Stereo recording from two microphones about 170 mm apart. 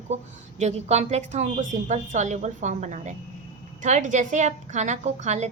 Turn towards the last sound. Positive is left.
turn(degrees=-45)  # may be behind; listen again after turning